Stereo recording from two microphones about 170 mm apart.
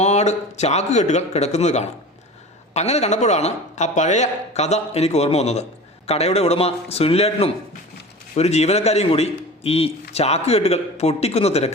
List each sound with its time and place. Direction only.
0.0 s a man's voice: 40° left (ahead or behind)